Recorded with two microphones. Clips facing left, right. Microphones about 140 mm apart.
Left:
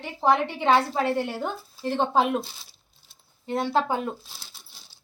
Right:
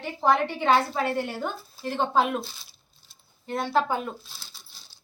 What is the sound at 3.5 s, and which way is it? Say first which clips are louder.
Speech: left 1 dB; 25° left (ahead or behind).